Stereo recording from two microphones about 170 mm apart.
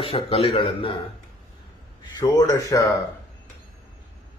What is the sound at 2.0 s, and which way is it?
Speech, 25° left (ahead or behind).